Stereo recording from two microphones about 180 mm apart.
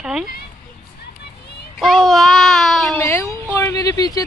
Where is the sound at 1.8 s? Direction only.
Centre (ahead or behind).